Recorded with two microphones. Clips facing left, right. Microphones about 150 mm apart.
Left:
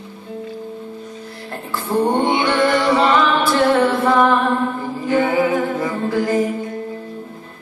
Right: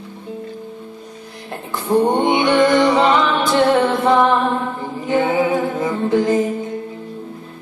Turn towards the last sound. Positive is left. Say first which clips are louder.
# right 2 dB
turn(degrees=-20)  # may be behind; listen again after turning